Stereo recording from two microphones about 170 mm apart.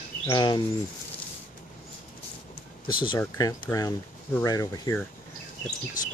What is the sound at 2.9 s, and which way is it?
Speech, 30° left (ahead or behind).